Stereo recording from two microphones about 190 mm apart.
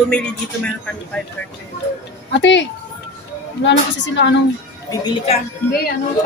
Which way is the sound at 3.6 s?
70° left (ahead or behind).